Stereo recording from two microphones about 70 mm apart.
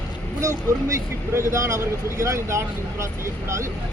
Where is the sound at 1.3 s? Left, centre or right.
Right.